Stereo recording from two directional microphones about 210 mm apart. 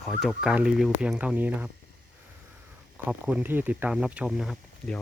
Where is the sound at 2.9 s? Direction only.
5° right (ahead or behind).